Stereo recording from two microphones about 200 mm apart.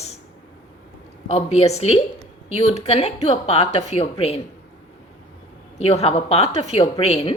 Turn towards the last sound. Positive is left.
turn(degrees=30)  # may be behind; listen again after turning